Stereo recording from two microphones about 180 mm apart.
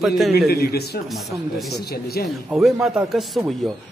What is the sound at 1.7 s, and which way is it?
Speech, 60° left (ahead or behind).